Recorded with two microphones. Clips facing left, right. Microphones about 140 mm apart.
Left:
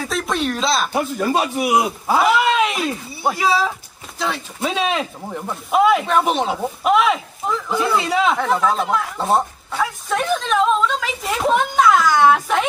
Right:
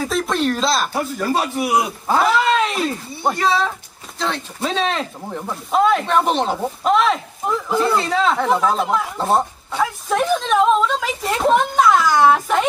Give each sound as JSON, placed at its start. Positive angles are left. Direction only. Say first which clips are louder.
{"t": 0.0, "sound": "speech", "louder": "right 2 dB", "side_deg": 0}
{"t": 0.9, "sound": "speech", "louder": "left 1 dB", "side_deg": 20}
{"t": 2.0, "sound": "speech", "louder": "even", "side_deg": 10}
{"t": 7.4, "sound": "speech", "louder": "right 2 dB", "side_deg": -5}
{"t": 7.8, "sound": "speech", "louder": "left 1 dB", "side_deg": 5}
{"t": 8.4, "sound": "speech", "louder": "right 1 dB", "side_deg": 0}